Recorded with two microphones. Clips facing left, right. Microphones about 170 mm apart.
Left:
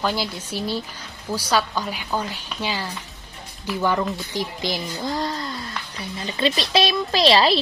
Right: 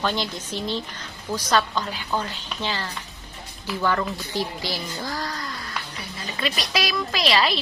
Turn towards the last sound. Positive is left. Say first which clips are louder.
# left 5 dB
turn(degrees=30)  # may be behind; listen again after turning